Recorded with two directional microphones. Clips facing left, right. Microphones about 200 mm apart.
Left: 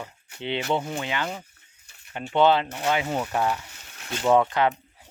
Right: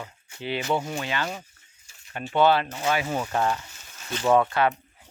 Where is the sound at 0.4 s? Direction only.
25° left (ahead or behind).